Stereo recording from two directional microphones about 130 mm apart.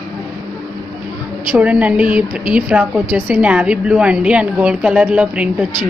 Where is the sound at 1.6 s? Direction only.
10° right (ahead or behind).